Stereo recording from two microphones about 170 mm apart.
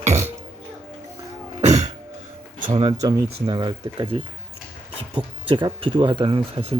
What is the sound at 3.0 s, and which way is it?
Speech, 25° right (ahead or behind).